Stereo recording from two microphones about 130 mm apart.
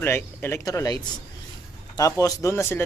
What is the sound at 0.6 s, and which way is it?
A man's voice, 25° left (ahead or behind).